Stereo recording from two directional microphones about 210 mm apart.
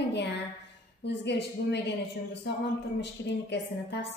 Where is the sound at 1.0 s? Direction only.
55° left (ahead or behind).